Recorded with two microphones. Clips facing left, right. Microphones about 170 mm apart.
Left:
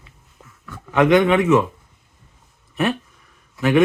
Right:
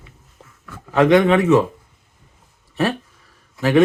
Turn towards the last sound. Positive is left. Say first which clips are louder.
# right 1 dB
turn(degrees=-35)  # may be behind; listen again after turning